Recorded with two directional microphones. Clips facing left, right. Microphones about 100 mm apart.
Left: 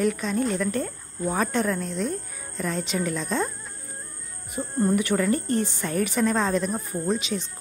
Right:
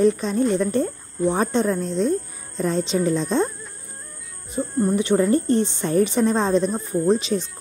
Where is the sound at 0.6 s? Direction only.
30° right (ahead or behind).